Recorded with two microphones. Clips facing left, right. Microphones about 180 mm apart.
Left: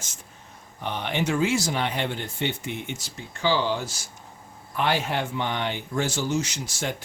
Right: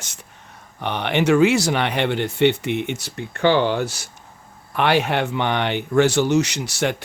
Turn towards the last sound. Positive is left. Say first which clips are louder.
# right 8 dB
turn(degrees=-70)  # may be behind; listen again after turning